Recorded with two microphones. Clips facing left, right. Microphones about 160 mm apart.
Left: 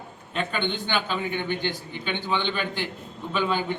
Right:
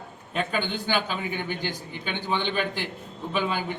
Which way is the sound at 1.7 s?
45° right (ahead or behind).